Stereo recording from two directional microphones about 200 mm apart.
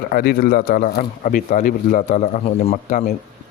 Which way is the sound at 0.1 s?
50° left (ahead or behind).